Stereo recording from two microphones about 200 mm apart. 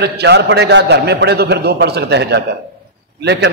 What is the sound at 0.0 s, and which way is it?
A man's voice, 60° right (ahead or behind).